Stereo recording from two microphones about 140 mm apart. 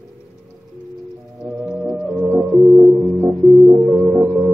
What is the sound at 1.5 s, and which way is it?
Music, 10° right (ahead or behind).